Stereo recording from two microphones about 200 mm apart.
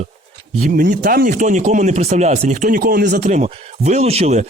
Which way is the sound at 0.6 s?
45° right (ahead or behind).